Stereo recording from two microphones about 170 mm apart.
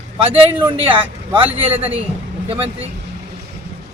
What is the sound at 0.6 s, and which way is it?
Speech, 30° right (ahead or behind).